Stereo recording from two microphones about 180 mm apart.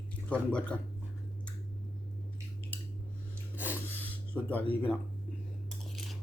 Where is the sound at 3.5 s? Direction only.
10° left (ahead or behind).